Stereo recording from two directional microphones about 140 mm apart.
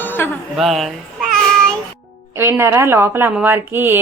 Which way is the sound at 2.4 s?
20° right (ahead or behind).